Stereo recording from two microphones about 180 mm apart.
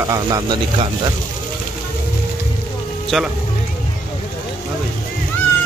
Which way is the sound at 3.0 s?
Centre (ahead or behind).